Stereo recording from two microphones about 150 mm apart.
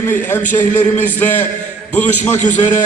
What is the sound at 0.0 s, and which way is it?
A man's voice, 15° left (ahead or behind).